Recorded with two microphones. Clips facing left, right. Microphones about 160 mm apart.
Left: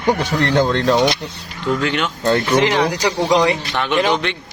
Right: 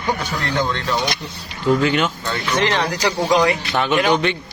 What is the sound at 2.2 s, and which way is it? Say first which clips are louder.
Speech: left 8 dB; 40° left (ahead or behind).